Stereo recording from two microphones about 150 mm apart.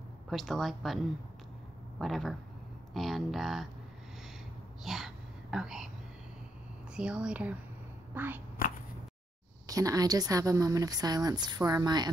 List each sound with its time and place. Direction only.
0.3 s speech: centre (ahead or behind)
2.0 s speech: centre (ahead or behind)
4.8 s whispering: centre (ahead or behind)
7.0 s speech: 5° right (ahead or behind)
8.6 s a sound: 70° left (ahead or behind)
9.7 s speech: 25° right (ahead or behind)